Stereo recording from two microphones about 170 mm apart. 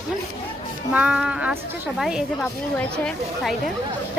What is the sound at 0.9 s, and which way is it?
Speech, 5° right (ahead or behind).